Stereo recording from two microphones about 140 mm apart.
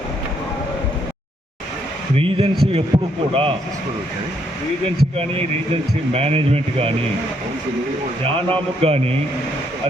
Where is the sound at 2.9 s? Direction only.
25° right (ahead or behind).